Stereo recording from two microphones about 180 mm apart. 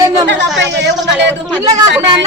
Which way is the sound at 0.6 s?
75° right (ahead or behind).